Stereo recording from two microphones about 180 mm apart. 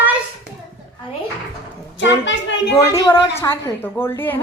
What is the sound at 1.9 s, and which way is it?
Speech, 90° left.